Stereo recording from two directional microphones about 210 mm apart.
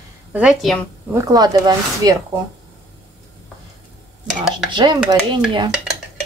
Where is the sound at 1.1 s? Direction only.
15° right (ahead or behind).